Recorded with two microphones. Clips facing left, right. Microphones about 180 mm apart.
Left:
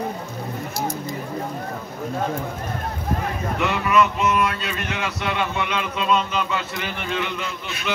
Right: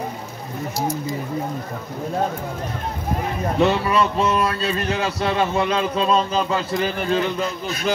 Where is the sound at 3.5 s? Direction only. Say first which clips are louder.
Right 2 dB; 30° right (ahead or behind).